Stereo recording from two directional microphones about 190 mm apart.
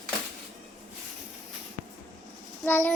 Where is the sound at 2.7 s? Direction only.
10° left (ahead or behind).